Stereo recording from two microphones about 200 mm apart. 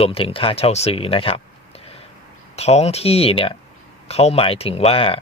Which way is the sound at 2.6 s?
30° left (ahead or behind).